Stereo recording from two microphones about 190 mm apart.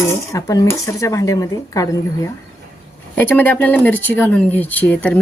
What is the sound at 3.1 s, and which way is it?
Speech, 10° left (ahead or behind).